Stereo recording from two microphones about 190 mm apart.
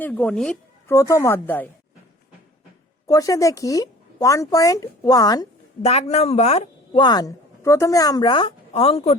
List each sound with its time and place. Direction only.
0.0 s speech: 5° left (ahead or behind)
0.9 s speech: 15° left (ahead or behind)
3.1 s speech: 20° left (ahead or behind)
5.8 s a woman's voice: 35° left (ahead or behind)